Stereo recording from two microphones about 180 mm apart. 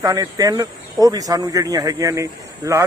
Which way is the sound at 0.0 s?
20° right (ahead or behind).